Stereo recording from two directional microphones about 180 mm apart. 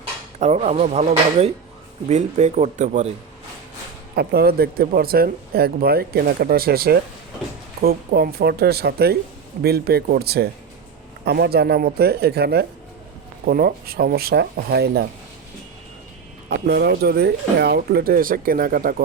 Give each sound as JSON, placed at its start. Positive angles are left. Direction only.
{"t": 0.3, "sound": "speech", "side_deg": -40}
{"t": 4.1, "sound": "speech", "side_deg": -60}
{"t": 16.5, "sound": "speech", "side_deg": -65}